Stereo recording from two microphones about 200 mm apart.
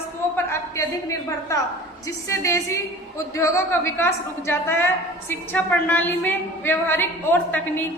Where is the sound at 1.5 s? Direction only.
15° left (ahead or behind).